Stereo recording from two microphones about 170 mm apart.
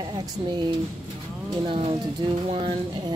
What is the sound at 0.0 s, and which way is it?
Speech, 25° right (ahead or behind).